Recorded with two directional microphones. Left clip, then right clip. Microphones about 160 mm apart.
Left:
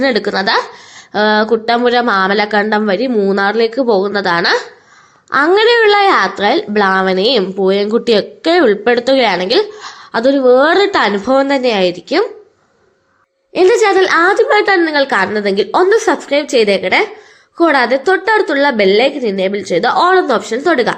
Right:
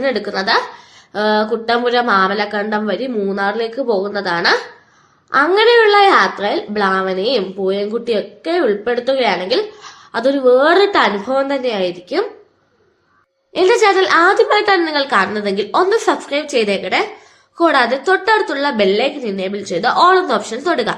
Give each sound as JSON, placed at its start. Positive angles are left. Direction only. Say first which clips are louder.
{"t": 0.0, "sound": "speech", "louder": "left 4 dB", "side_deg": 55}
{"t": 13.5, "sound": "a woman's voice", "louder": "left 2 dB", "side_deg": 25}